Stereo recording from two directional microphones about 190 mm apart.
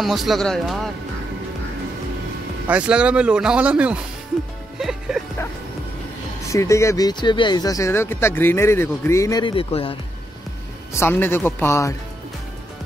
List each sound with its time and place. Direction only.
0.0 s speech: centre (ahead or behind)
2.7 s speech: 5° right (ahead or behind)
4.7 s music: centre (ahead or behind)
6.5 s speech: 15° left (ahead or behind)
10.9 s speech: 10° left (ahead or behind)